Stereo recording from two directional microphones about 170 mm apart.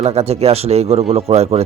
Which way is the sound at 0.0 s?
40° right (ahead or behind).